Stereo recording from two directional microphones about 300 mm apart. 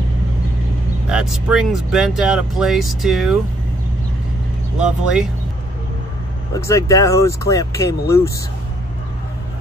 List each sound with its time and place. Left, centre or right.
1.0 s speech: centre
4.7 s speech: centre
6.5 s speech: centre